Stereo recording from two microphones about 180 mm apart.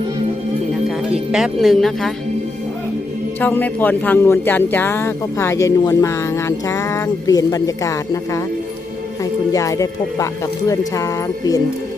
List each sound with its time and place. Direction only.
0.9 s speech: 5° right (ahead or behind)
3.4 s a man's voice: 10° left (ahead or behind)